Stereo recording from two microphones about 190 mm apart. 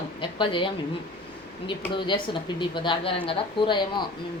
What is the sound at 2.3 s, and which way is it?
A woman's voice, 25° left (ahead or behind).